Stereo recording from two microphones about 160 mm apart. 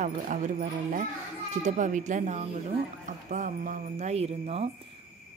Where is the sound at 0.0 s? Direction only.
50° right (ahead or behind).